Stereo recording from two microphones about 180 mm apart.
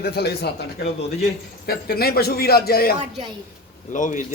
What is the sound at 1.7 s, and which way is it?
Speech, 60° left (ahead or behind).